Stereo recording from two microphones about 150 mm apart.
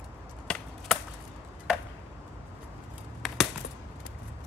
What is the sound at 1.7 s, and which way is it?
Chop, 5° right (ahead or behind).